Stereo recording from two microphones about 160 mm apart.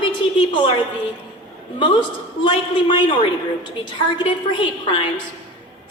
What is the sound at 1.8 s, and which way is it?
A woman's voice, 30° left (ahead or behind).